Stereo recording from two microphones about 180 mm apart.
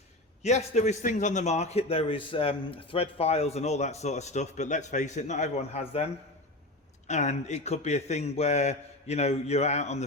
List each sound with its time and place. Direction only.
0.4 s a man's voice: 40° left (ahead or behind)
7.1 s a man's voice: 40° left (ahead or behind)